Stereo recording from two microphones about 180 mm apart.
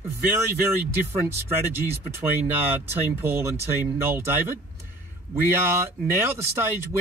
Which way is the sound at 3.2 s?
15° right (ahead or behind).